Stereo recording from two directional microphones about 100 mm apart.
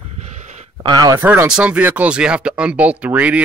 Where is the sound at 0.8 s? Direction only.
45° right (ahead or behind).